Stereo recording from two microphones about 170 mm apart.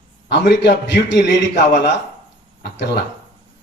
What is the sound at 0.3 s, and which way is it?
A man's voice, 85° left.